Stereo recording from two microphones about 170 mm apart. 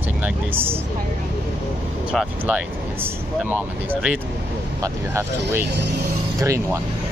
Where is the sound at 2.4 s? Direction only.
10° right (ahead or behind).